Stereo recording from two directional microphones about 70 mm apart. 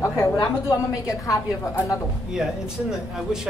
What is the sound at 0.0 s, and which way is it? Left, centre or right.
A woman's voice, left.